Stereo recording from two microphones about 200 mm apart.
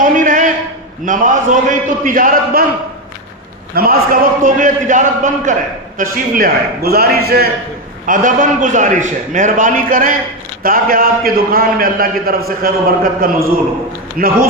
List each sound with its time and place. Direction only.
0.0 s a sound: 40° right (ahead or behind)
1.0 s a man's voice: 40° right (ahead or behind)
3.8 s a man's voice: 45° right (ahead or behind)
8.0 s a man's voice: 40° right (ahead or behind)